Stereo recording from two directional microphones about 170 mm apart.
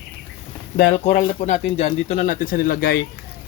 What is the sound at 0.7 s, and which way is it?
Speech, 45° left (ahead or behind).